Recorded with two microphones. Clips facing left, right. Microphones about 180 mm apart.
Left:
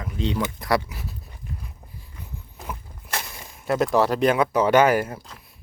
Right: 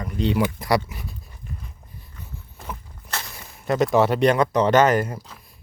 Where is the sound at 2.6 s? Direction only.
5° left (ahead or behind).